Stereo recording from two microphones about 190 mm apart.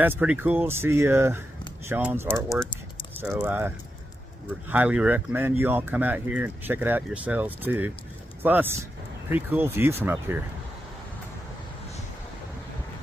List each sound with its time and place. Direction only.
0.0 s speech: 10° right (ahead or behind)